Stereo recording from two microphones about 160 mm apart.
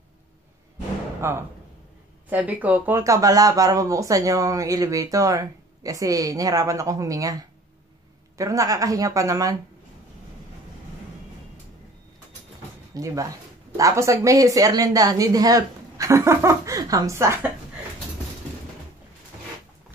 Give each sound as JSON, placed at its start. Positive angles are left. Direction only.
{"t": 1.2, "sound": "speech", "side_deg": -15}
{"t": 12.9, "sound": "speech", "side_deg": -20}